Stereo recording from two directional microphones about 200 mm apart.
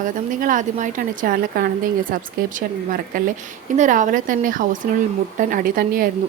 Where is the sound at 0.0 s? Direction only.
40° right (ahead or behind).